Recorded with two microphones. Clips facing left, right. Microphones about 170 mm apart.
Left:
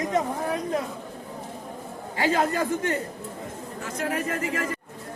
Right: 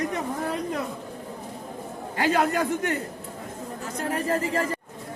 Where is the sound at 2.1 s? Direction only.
55° right (ahead or behind).